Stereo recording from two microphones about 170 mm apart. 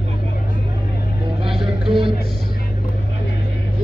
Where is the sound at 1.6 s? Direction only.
30° right (ahead or behind).